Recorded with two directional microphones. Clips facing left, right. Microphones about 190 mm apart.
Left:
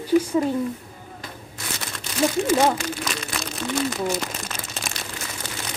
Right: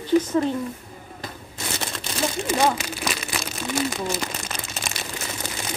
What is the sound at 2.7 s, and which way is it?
Speech, 5° right (ahead or behind).